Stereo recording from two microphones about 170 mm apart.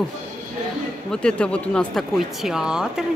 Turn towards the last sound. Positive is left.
turn(degrees=-5)  # may be behind; listen again after turning